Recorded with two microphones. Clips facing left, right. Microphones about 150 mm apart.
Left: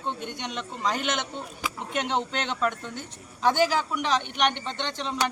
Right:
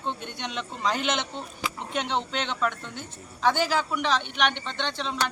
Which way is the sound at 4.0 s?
15° left (ahead or behind).